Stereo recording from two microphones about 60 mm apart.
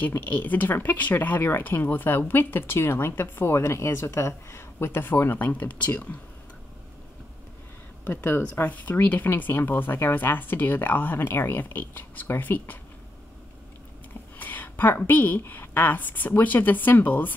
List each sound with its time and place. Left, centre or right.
0.3 s speech: left
8.0 s speech: left
14.4 s a sound: left
15.0 s speech: left